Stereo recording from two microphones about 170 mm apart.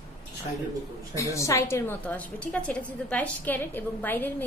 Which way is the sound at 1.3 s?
15° left (ahead or behind).